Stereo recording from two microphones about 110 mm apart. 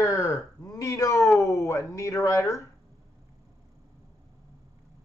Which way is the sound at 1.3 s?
30° left (ahead or behind).